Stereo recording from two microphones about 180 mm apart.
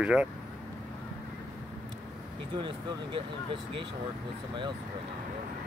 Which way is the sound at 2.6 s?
30° right (ahead or behind).